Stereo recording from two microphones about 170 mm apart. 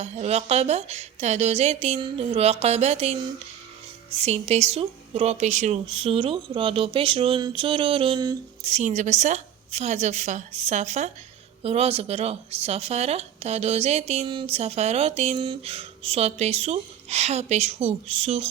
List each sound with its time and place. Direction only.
0.0 s a woman's voice: 40° right (ahead or behind)
5.8 s a woman's voice: 30° right (ahead or behind)
8.6 s a woman's voice: 40° right (ahead or behind)